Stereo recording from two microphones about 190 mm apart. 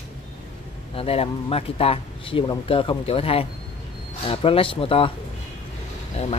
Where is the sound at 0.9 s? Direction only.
30° left (ahead or behind).